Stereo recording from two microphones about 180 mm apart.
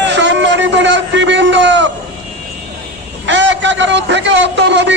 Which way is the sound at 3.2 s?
90° right.